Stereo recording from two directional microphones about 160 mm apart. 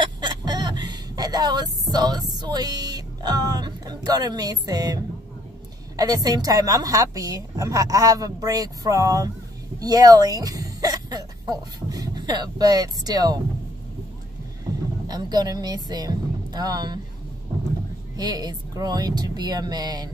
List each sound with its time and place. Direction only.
0.0 s a woman's voice: 25° right (ahead or behind)
15.0 s a woman's voice: 25° right (ahead or behind)
18.1 s a woman's voice: 25° right (ahead or behind)